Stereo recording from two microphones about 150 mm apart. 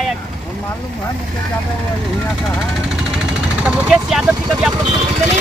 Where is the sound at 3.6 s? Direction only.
5° right (ahead or behind).